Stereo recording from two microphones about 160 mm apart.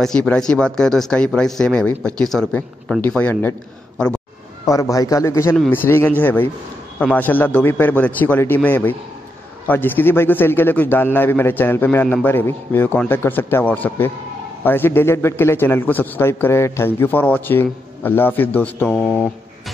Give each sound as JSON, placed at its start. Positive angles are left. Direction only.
{"t": 0.0, "sound": "speech", "side_deg": 5}
{"t": 4.6, "sound": "a man's voice", "side_deg": 20}